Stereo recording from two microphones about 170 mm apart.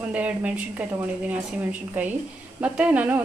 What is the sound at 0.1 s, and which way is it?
Speech, 10° right (ahead or behind).